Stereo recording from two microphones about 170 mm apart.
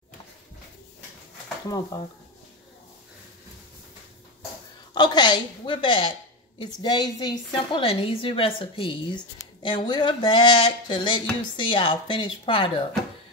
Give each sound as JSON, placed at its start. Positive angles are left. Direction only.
{"t": 1.9, "sound": "a woman's voice", "side_deg": 20}
{"t": 4.9, "sound": "a woman's voice", "side_deg": 25}